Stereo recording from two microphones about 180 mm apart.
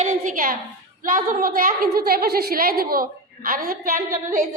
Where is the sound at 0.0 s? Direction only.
50° right (ahead or behind).